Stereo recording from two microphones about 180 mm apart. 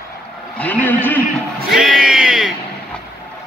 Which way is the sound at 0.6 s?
10° left (ahead or behind).